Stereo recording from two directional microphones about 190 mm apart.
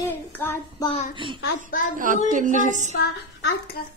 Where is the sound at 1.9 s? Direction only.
45° right (ahead or behind).